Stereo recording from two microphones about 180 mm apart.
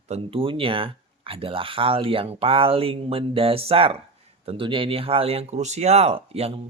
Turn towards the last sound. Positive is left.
turn(degrees=-35)  # may be behind; listen again after turning